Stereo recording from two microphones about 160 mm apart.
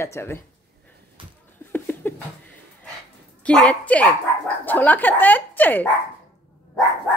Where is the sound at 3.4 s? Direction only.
10° left (ahead or behind).